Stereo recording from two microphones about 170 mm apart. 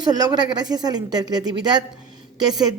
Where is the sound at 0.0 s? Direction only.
25° right (ahead or behind).